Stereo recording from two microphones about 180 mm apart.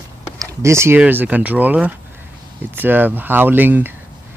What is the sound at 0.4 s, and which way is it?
A man's voice, 15° right (ahead or behind).